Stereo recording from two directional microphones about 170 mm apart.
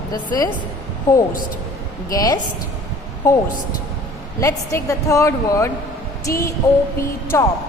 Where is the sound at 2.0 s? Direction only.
20° left (ahead or behind).